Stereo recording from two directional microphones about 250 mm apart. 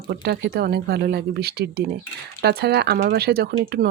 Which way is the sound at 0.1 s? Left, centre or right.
Right.